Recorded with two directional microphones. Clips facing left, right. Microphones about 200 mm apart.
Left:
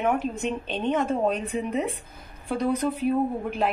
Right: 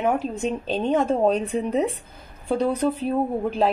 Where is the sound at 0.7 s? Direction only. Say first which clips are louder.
Right 4 dB; 35° right (ahead or behind).